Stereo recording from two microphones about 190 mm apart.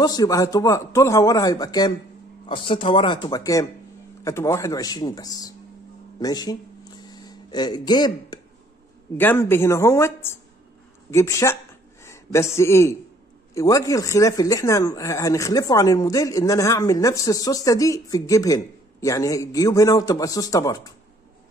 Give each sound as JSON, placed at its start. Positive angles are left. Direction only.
{"t": 0.0, "sound": "speech", "side_deg": 20}
{"t": 6.1, "sound": "a sound", "side_deg": 20}
{"t": 9.1, "sound": "a man's voice", "side_deg": 10}